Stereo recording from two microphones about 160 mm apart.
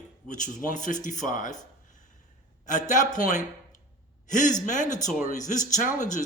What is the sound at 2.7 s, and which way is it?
Speech, 50° left (ahead or behind).